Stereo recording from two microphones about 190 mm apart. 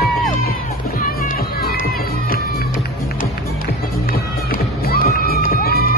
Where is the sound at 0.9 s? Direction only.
45° left (ahead or behind).